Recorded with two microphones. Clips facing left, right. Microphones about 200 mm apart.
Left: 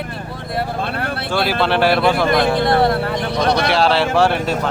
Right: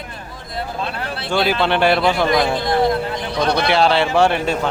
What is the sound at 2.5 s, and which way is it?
Speech, 60° left (ahead or behind).